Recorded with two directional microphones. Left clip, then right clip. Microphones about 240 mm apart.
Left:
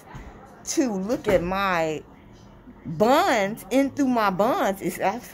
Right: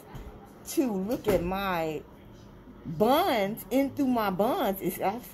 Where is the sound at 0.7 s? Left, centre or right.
Centre.